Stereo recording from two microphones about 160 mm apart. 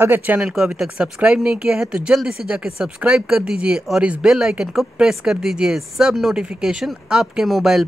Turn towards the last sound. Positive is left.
turn(degrees=0)  # may be behind; listen again after turning